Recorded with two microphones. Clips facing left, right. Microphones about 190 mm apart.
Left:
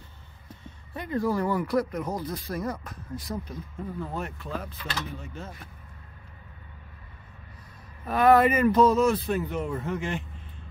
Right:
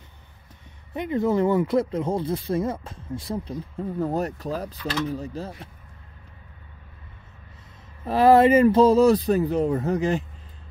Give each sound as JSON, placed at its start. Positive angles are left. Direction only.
{"t": 0.7, "sound": "speech", "side_deg": -20}
{"t": 3.7, "sound": "speech", "side_deg": -40}
{"t": 8.0, "sound": "speech", "side_deg": -30}